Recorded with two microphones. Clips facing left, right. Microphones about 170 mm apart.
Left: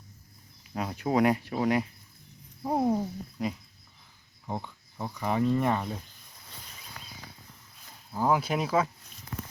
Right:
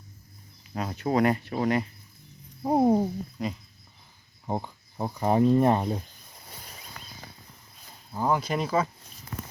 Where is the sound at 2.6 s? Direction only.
25° right (ahead or behind).